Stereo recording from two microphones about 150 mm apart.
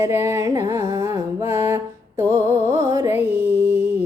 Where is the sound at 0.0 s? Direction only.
15° right (ahead or behind).